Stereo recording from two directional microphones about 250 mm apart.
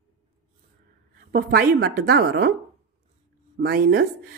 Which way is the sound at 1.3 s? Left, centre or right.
Right.